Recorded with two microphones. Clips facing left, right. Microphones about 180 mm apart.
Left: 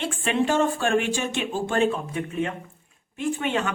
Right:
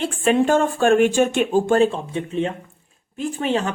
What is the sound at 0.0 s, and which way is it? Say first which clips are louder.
Speech: right 6 dB; 45° right (ahead or behind).